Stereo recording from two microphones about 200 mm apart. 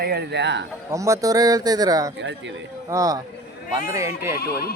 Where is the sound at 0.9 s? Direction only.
15° right (ahead or behind).